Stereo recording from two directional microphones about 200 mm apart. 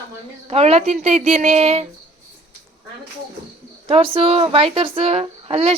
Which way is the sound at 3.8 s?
25° right (ahead or behind).